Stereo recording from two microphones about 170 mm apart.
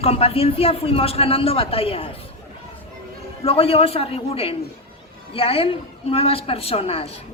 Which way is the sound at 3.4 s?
35° left (ahead or behind).